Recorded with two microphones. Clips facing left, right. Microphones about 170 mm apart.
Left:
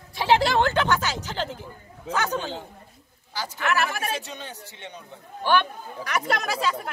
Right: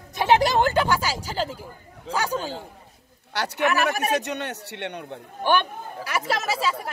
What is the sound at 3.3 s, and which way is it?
A man's voice, 70° right (ahead or behind).